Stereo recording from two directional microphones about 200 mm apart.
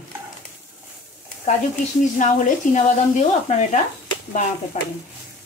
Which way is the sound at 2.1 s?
35° left (ahead or behind).